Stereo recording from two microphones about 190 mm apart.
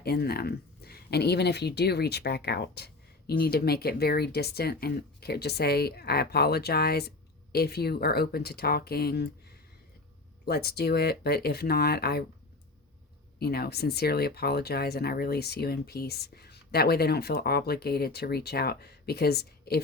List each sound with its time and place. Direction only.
0.0 s speech: 55° left (ahead or behind)
10.4 s speech: 55° left (ahead or behind)
13.4 s speech: 55° left (ahead or behind)